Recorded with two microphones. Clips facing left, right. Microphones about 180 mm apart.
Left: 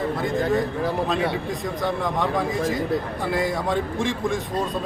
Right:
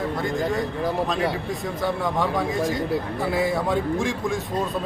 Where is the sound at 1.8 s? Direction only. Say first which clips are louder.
Right 1 dB; centre (ahead or behind).